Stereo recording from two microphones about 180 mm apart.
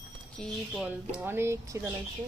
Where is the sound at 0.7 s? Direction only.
5° right (ahead or behind).